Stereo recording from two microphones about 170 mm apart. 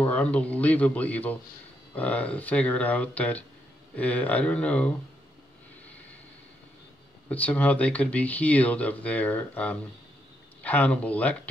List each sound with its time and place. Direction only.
0.0 s speech: 10° left (ahead or behind)
7.2 s speech: 10° left (ahead or behind)